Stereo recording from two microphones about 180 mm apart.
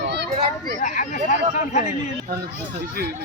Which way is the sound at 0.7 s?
50° left (ahead or behind).